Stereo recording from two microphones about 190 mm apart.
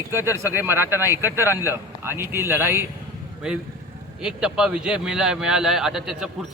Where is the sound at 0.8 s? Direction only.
10° right (ahead or behind).